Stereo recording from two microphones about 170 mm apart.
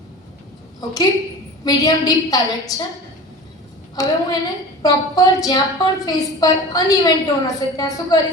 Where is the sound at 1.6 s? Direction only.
20° left (ahead or behind).